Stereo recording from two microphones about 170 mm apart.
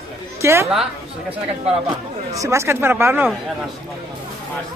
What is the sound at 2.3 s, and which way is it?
Speech, 15° right (ahead or behind).